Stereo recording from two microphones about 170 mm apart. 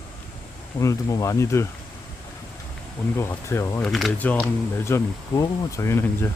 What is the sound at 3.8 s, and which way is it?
Speech, centre (ahead or behind).